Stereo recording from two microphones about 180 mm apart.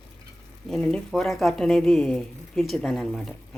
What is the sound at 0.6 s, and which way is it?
Speech, centre (ahead or behind).